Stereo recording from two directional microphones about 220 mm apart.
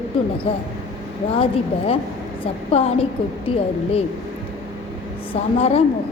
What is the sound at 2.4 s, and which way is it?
A woman's voice, 25° left (ahead or behind).